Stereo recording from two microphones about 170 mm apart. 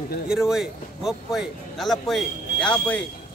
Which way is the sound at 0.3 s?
Centre (ahead or behind).